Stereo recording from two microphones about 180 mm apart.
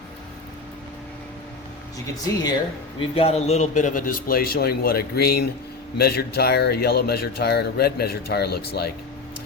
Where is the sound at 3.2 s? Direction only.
35° left (ahead or behind).